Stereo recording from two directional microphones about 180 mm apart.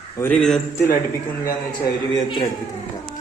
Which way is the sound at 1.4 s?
25° left (ahead or behind).